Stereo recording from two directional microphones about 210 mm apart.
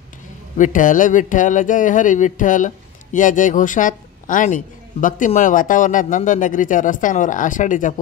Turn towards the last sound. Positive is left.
turn(degrees=40)  # may be behind; listen again after turning